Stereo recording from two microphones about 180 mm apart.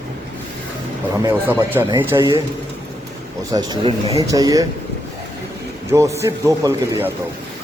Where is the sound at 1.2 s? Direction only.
15° right (ahead or behind).